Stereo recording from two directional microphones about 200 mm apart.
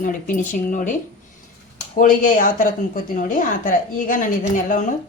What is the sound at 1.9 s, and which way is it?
A woman's voice, 45° left (ahead or behind).